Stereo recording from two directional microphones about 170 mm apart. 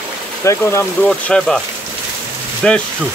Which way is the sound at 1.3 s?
5° left (ahead or behind).